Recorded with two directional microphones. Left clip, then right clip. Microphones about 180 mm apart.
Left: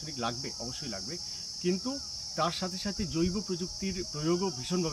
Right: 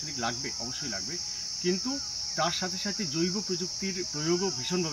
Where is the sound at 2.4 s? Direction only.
25° left (ahead or behind).